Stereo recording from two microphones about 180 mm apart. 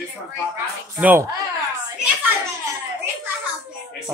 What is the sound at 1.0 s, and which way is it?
Speech, 10° right (ahead or behind).